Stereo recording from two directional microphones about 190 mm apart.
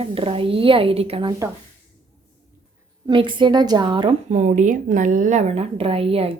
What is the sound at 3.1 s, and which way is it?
A woman's voice, 25° right (ahead or behind).